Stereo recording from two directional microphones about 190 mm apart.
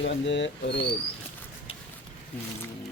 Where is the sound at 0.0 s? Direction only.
70° left (ahead or behind).